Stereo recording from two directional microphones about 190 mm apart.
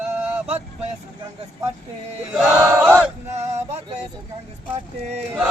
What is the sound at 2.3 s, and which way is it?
Chant, 10° right (ahead or behind).